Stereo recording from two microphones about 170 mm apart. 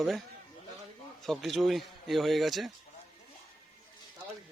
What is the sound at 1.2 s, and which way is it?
Speech, centre (ahead or behind).